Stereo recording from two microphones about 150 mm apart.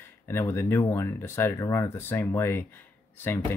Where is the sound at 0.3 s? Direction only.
15° left (ahead or behind).